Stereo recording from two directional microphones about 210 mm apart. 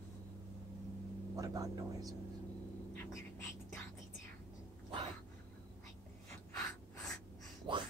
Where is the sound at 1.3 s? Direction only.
15° right (ahead or behind).